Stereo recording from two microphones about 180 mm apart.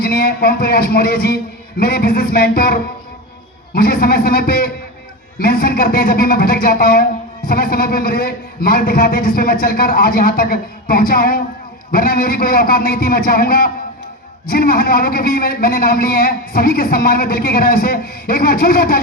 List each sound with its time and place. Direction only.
0.0 s speech: 60° left (ahead or behind)